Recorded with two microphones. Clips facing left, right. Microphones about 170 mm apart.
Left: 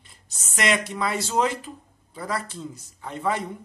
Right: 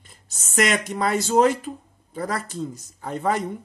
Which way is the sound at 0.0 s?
45° right (ahead or behind).